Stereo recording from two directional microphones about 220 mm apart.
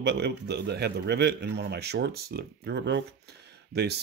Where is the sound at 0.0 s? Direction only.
50° right (ahead or behind).